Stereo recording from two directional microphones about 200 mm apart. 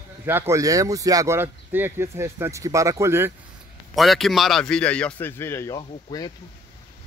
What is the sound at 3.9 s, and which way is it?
A man's voice, centre (ahead or behind).